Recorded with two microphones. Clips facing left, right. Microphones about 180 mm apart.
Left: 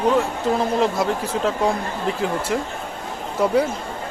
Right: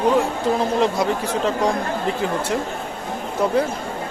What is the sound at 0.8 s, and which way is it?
Speech, centre (ahead or behind).